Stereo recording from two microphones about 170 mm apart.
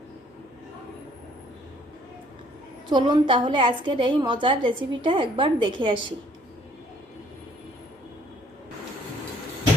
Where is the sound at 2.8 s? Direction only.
25° right (ahead or behind).